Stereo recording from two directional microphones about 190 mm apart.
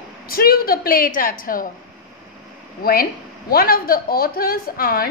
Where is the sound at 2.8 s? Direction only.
50° left (ahead or behind).